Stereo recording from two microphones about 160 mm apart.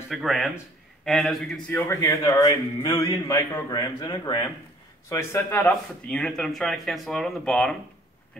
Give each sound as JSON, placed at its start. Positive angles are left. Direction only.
{"t": 0.1, "sound": "speech", "side_deg": 0}
{"t": 1.7, "sound": "speech", "side_deg": 15}